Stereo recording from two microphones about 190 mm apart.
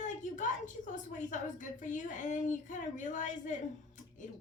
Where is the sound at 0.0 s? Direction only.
40° left (ahead or behind).